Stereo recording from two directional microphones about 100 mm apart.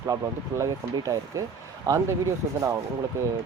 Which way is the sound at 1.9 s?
40° right (ahead or behind).